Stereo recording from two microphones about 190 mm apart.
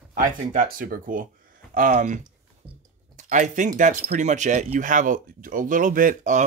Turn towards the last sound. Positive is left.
turn(degrees=-45)  # may be behind; listen again after turning